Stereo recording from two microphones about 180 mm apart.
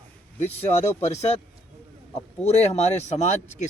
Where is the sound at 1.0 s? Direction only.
40° left (ahead or behind).